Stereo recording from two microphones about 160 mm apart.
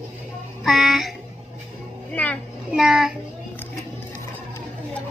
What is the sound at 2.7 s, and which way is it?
Music, 5° right (ahead or behind).